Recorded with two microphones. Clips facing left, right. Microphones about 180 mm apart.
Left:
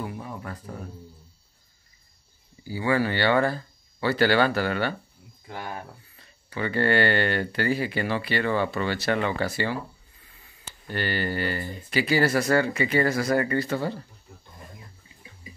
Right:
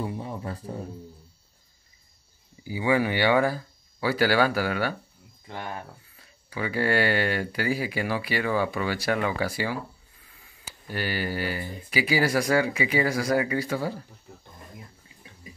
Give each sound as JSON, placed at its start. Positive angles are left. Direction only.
{"t": 0.0, "sound": "speech", "side_deg": -25}
{"t": 2.6, "sound": "speech", "side_deg": -15}
{"t": 5.5, "sound": "speech", "side_deg": 10}
{"t": 6.1, "sound": "speech", "side_deg": -5}